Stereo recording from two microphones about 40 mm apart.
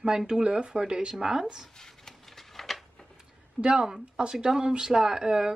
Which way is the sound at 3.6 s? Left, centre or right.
Centre.